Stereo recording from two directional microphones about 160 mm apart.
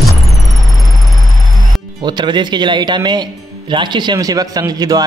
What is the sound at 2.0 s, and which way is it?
A man's voice, 25° right (ahead or behind).